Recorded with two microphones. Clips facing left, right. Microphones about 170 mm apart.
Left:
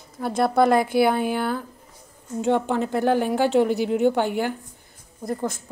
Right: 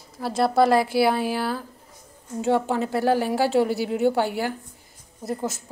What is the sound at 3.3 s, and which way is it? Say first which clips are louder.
Speech: left 1 dB; 35° right (ahead or behind).